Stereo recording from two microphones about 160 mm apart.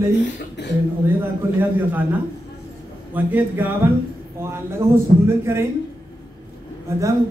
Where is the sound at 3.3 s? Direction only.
10° right (ahead or behind).